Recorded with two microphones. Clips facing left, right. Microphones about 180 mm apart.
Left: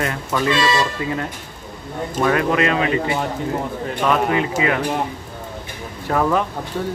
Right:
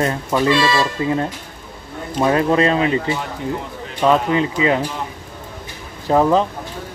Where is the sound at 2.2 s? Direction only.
25° right (ahead or behind).